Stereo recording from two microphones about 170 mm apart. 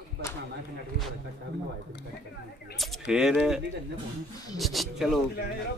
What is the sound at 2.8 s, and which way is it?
Speech, 5° right (ahead or behind).